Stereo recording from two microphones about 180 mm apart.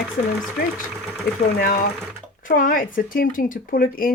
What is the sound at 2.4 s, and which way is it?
Speech, 50° left (ahead or behind).